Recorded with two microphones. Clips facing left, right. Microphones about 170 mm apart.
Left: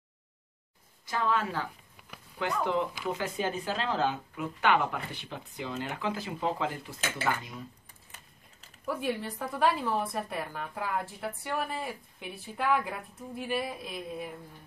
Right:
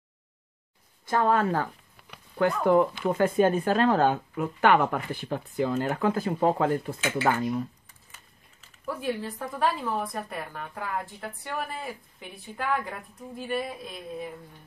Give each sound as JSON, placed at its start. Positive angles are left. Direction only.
{"t": 1.0, "sound": "speech", "side_deg": -50}
{"t": 2.0, "sound": "a sound", "side_deg": 15}
{"t": 2.3, "sound": "speech", "side_deg": -50}
{"t": 8.8, "sound": "a woman's voice", "side_deg": 0}